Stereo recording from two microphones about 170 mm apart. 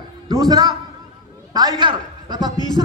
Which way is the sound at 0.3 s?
20° right (ahead or behind).